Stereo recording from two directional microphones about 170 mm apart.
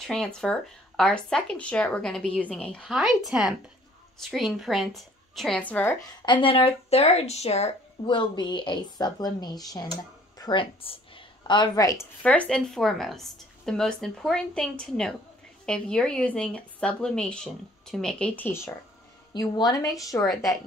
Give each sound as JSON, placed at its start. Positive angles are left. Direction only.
{"t": 0.0, "sound": "speech", "side_deg": 5}
{"t": 6.0, "sound": "speech", "side_deg": 25}
{"t": 8.1, "sound": "speech", "side_deg": 25}
{"t": 12.2, "sound": "speech", "side_deg": 5}
{"t": 19.3, "sound": "speech", "side_deg": 25}